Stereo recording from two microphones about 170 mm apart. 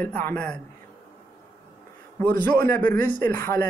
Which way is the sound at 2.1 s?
10° left (ahead or behind).